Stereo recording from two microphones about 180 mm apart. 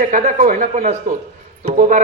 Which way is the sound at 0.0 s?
45° right (ahead or behind).